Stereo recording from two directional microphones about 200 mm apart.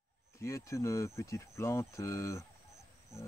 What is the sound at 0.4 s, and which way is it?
Speech, 15° left (ahead or behind).